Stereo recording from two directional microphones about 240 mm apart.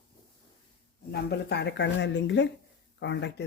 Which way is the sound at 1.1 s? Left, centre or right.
Left.